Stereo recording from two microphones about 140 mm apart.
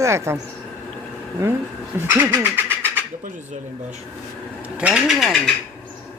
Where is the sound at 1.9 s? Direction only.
15° right (ahead or behind).